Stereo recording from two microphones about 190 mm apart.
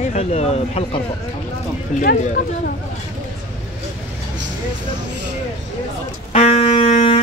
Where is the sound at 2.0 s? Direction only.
50° left (ahead or behind).